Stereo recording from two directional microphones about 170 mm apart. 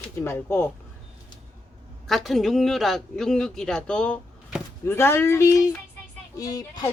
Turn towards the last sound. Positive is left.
turn(degrees=20)  # may be behind; listen again after turning